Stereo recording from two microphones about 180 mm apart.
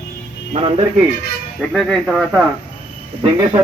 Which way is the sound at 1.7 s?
Centre (ahead or behind).